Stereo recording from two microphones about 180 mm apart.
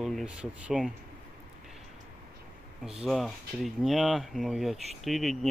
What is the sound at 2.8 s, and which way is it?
Speech, centre (ahead or behind).